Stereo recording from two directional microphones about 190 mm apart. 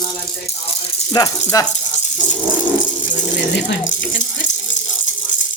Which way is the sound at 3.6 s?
65° left (ahead or behind).